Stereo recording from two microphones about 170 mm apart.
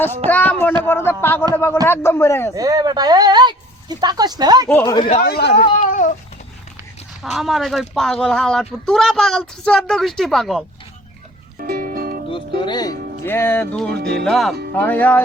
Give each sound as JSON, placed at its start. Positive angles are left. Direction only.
{"t": 0.3, "sound": "speech", "side_deg": 10}
{"t": 0.9, "sound": "music", "side_deg": 15}
{"t": 2.6, "sound": "speech", "side_deg": -20}
{"t": 4.7, "sound": "music", "side_deg": 15}
{"t": 5.2, "sound": "speech", "side_deg": 70}
{"t": 5.5, "sound": "a child's voice", "side_deg": 35}
{"t": 5.8, "sound": "babbling", "side_deg": 50}
{"t": 7.2, "sound": "speech", "side_deg": 0}
{"t": 11.6, "sound": "music", "side_deg": -60}
{"t": 12.3, "sound": "speech", "side_deg": 25}
{"t": 13.2, "sound": "music", "side_deg": 15}
{"t": 14.3, "sound": "speech", "side_deg": 0}
{"t": 14.8, "sound": "music", "side_deg": 10}